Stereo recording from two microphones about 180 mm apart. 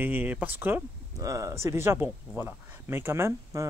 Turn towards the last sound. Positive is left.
turn(degrees=-15)  # may be behind; listen again after turning